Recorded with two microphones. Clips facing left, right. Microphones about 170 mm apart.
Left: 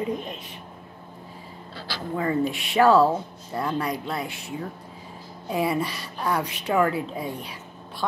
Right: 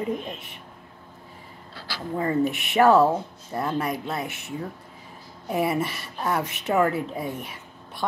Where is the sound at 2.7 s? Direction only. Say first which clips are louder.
Even; 20° right (ahead or behind).